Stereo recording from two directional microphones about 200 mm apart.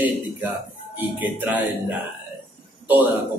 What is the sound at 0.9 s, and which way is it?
Speech, 10° right (ahead or behind).